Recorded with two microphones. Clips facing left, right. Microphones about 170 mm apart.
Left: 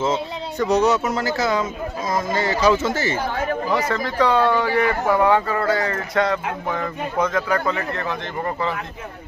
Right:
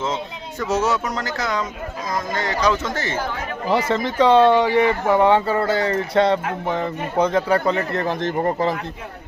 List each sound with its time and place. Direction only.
0.0 s speech: 5° left (ahead or behind)
3.6 s speech: 25° right (ahead or behind)